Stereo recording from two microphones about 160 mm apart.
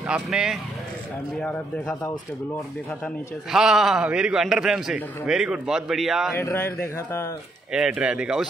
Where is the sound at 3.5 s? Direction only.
5° right (ahead or behind).